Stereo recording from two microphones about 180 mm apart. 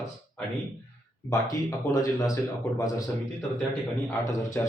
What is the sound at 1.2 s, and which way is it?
Speech, 20° left (ahead or behind).